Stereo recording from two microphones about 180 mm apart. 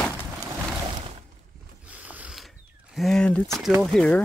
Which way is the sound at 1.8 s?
10° right (ahead or behind).